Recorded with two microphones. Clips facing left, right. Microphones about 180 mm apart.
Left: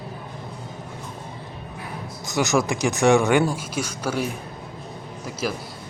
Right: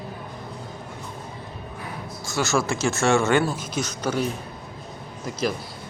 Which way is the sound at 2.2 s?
20° left (ahead or behind).